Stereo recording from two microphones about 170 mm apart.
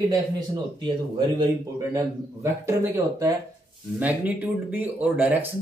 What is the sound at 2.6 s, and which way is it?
Speech, 15° right (ahead or behind).